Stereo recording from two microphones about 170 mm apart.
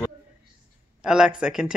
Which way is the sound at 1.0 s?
5° right (ahead or behind).